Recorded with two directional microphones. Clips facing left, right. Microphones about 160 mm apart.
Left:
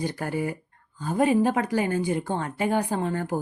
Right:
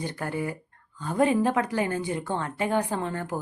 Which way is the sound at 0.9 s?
35° left (ahead or behind).